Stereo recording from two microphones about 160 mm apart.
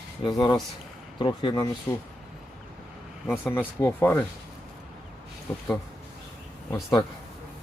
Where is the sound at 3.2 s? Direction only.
15° left (ahead or behind).